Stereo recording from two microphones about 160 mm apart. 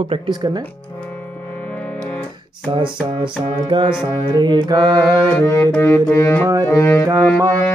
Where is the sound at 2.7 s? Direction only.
30° right (ahead or behind).